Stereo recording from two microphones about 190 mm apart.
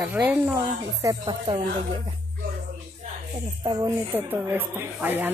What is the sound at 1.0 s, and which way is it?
Speech, 20° right (ahead or behind).